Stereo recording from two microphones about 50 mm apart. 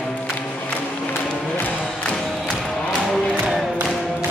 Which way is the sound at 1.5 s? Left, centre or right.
Left.